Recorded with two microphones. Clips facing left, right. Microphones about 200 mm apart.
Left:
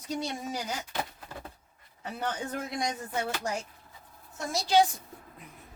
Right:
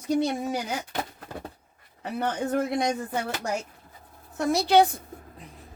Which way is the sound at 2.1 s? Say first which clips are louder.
Right 8 dB; 60° right (ahead or behind).